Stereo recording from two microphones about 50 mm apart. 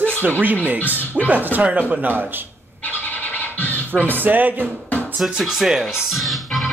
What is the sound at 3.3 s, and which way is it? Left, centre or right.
Scratch, left.